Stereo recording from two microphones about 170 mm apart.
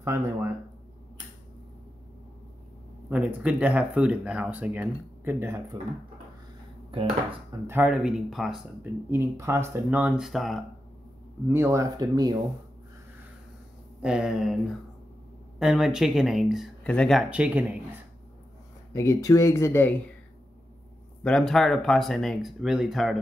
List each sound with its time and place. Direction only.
0.0 s speech: 15° right (ahead or behind)
3.1 s speech: 5° right (ahead or behind)
6.9 s speech: 35° right (ahead or behind)
7.6 s speech: 10° right (ahead or behind)
9.1 s speech: 15° right (ahead or behind); by 10.6 s centre (ahead or behind)
11.4 s speech: 15° right (ahead or behind)
14.0 s speech: 5° right (ahead or behind)
15.6 s speech: centre (ahead or behind)
17.3 s speech: 10° right (ahead or behind)
18.9 s speech: 20° left (ahead or behind)
21.2 s speech: 5° left (ahead or behind)